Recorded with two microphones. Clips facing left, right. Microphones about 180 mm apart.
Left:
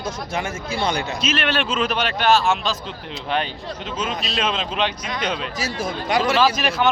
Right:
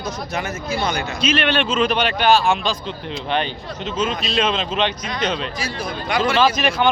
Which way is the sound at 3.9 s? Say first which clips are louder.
Right 5 dB; 5° left (ahead or behind).